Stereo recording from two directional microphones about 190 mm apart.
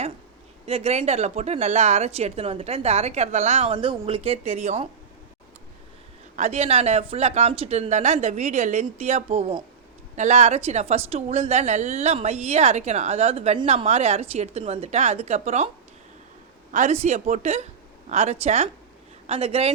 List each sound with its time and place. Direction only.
0.6 s a woman's voice: 30° right (ahead or behind)
6.3 s a woman's voice: 35° right (ahead or behind)
16.7 s a woman's voice: 35° right (ahead or behind)